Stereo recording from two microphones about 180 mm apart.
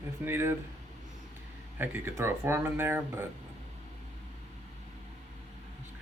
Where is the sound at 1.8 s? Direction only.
10° right (ahead or behind).